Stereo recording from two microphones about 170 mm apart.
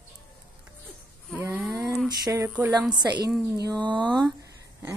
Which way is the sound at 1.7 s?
20° right (ahead or behind).